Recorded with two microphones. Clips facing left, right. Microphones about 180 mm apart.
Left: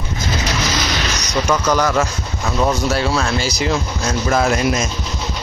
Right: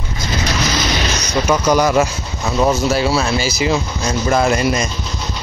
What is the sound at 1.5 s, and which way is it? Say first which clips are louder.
Speech: right 3 dB; 10° right (ahead or behind).